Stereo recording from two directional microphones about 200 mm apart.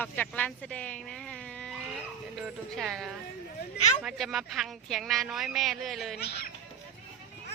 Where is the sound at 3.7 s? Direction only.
35° left (ahead or behind).